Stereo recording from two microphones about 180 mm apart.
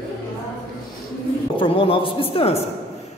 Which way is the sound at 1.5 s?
30° left (ahead or behind).